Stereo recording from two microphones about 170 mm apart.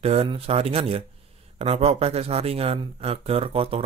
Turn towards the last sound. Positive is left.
turn(degrees=-35)  # may be behind; listen again after turning